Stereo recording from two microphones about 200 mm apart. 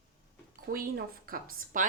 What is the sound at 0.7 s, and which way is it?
A woman's voice, 45° right (ahead or behind).